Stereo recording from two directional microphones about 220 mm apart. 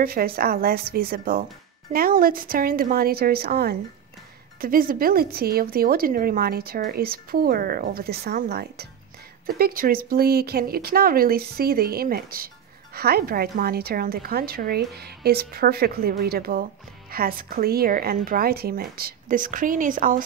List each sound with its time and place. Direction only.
0.0 s a woman's voice: 40° right (ahead or behind)